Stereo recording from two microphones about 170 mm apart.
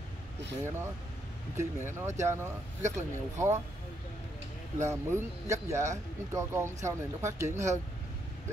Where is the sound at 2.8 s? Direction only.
45° right (ahead or behind).